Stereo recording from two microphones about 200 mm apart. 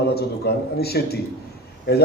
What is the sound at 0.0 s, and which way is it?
A man's voice, 55° left (ahead or behind).